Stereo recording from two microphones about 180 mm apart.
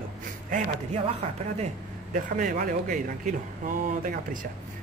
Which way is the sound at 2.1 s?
50° right (ahead or behind).